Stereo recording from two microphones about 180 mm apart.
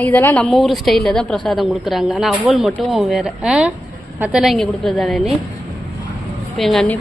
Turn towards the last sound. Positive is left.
turn(degrees=0)  # may be behind; listen again after turning